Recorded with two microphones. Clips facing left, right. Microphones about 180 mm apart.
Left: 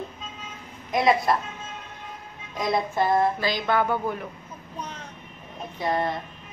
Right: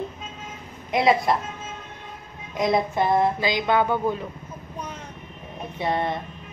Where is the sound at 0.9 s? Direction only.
25° right (ahead or behind).